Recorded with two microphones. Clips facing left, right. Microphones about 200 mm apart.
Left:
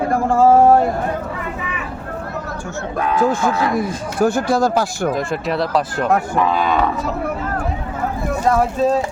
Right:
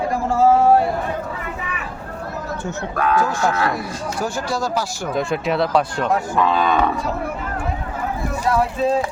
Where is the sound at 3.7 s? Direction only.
50° left (ahead or behind).